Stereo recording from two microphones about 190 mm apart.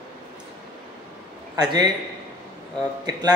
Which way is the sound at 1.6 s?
20° right (ahead or behind).